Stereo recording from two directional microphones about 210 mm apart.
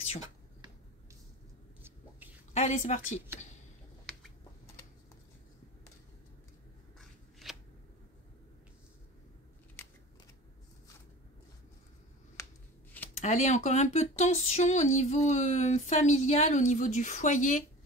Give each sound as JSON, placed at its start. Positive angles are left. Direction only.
{"t": 1.8, "sound": "whispering", "side_deg": -10}
{"t": 2.5, "sound": "speech", "side_deg": 35}
{"t": 7.0, "sound": "scissors", "side_deg": 0}
{"t": 13.2, "sound": "speech", "side_deg": 35}